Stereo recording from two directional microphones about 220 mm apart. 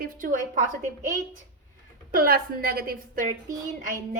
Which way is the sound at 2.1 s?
40° right (ahead or behind).